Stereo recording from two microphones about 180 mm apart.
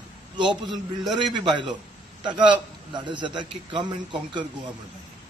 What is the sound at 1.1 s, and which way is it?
A man's voice, 25° right (ahead or behind).